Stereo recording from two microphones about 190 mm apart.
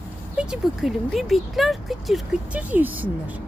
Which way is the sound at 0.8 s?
Centre (ahead or behind).